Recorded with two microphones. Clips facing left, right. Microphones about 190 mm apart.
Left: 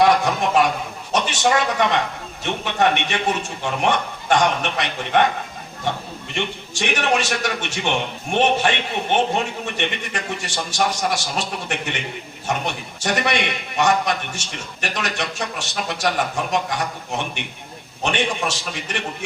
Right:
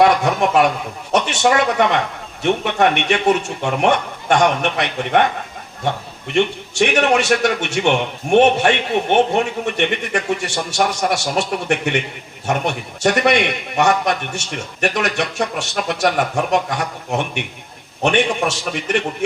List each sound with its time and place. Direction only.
0.0 s a man's voice: 60° right (ahead or behind)
6.3 s a man's voice: 60° right (ahead or behind)